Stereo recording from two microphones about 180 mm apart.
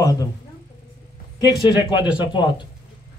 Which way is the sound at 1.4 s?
20° left (ahead or behind).